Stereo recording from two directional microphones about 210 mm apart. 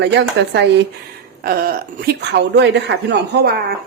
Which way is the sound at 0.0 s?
55° right (ahead or behind).